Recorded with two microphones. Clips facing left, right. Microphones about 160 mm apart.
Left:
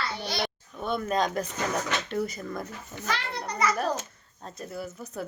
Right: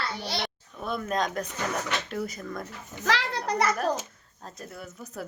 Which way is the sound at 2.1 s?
Centre (ahead or behind).